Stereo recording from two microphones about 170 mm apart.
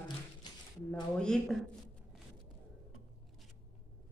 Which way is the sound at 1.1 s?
5° left (ahead or behind).